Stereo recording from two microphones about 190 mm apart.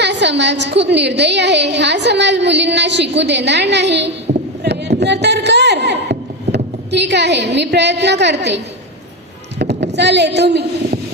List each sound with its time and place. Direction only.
0.0 s a woman's voice: 65° right (ahead or behind)
4.6 s a sound: 65° right (ahead or behind)
9.6 s speech: 65° right (ahead or behind)